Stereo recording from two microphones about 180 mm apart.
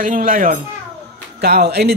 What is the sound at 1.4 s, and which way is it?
Speech, 65° right (ahead or behind).